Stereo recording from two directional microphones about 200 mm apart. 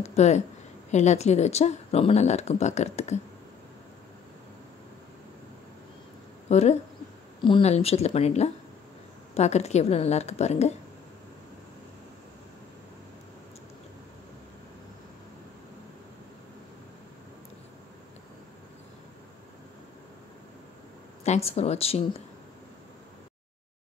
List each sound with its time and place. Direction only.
0.0 s a woman's voice: 35° left (ahead or behind)
6.5 s speech: 35° left (ahead or behind)
21.2 s speech: 30° left (ahead or behind)